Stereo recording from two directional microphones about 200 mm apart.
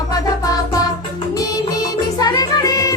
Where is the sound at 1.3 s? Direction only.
20° left (ahead or behind).